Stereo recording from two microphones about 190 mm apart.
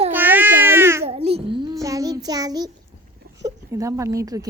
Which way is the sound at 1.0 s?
30° right (ahead or behind).